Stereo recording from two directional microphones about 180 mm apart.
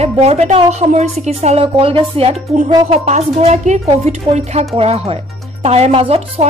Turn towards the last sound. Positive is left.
turn(degrees=-35)  # may be behind; listen again after turning